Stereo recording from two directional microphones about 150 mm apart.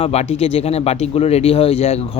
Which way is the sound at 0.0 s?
45° left (ahead or behind).